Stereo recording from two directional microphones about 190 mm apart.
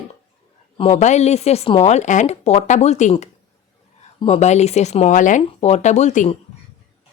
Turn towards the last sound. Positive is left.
turn(degrees=40)  # may be behind; listen again after turning